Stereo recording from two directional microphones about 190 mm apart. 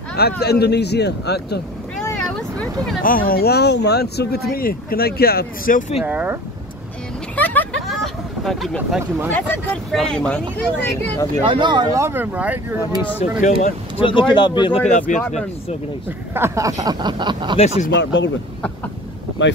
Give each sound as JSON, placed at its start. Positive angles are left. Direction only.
{"t": 0.4, "sound": "speech", "side_deg": 60}
{"t": 2.3, "sound": "vehicle", "side_deg": 5}
{"t": 3.0, "sound": "speech", "side_deg": 45}
{"t": 6.0, "sound": "speech", "side_deg": -5}
{"t": 7.3, "sound": "a sound", "side_deg": 10}
{"t": 9.3, "sound": "speech", "side_deg": 5}
{"t": 11.4, "sound": "speech", "side_deg": -25}
{"t": 13.4, "sound": "speech", "side_deg": 40}
{"t": 14.0, "sound": "speech", "side_deg": 25}
{"t": 14.9, "sound": "speech", "side_deg": 40}
{"t": 16.3, "sound": "speech", "side_deg": -15}
{"t": 17.6, "sound": "speech", "side_deg": 35}
{"t": 17.9, "sound": "speech", "side_deg": 75}